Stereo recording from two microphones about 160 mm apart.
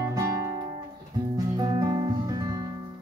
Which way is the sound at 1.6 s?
25° right (ahead or behind).